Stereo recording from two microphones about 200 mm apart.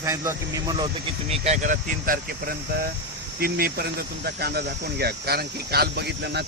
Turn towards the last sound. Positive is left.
turn(degrees=-55)  # may be behind; listen again after turning